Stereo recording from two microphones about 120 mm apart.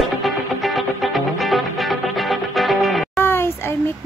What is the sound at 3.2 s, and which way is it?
Child singing, 20° left (ahead or behind).